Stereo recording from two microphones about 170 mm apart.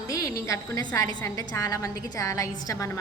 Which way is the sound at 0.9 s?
20° left (ahead or behind).